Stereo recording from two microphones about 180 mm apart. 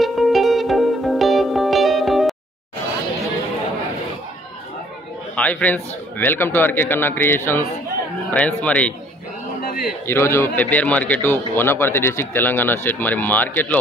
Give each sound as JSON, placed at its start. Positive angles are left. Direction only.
{"t": 0.0, "sound": "music", "side_deg": 0}
{"t": 5.3, "sound": "a man's voice", "side_deg": 10}
{"t": 9.6, "sound": "a sound", "side_deg": 55}
{"t": 10.0, "sound": "a man's voice", "side_deg": 15}